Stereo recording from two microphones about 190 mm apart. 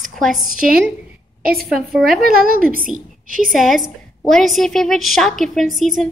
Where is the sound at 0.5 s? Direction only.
50° right (ahead or behind).